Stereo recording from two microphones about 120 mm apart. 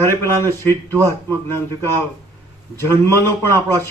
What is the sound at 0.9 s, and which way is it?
Speech, 25° right (ahead or behind).